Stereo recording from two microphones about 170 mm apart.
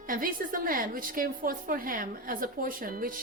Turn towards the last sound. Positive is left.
turn(degrees=-55)  # may be behind; listen again after turning